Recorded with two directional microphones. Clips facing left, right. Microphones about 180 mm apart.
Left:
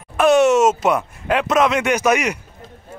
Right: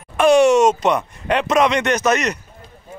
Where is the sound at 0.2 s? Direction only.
Centre (ahead or behind).